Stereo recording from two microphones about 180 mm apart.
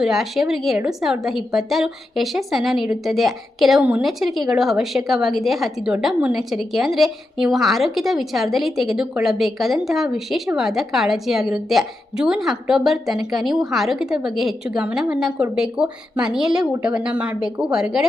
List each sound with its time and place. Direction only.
0.0 s a woman's voice: centre (ahead or behind)